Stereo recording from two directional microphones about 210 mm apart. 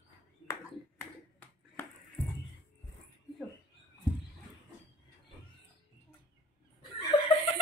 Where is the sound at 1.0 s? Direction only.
10° left (ahead or behind).